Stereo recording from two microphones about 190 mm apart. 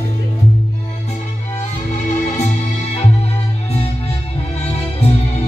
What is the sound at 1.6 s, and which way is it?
Music, 40° left (ahead or behind).